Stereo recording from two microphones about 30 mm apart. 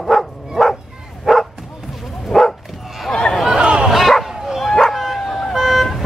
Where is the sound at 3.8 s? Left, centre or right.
Centre.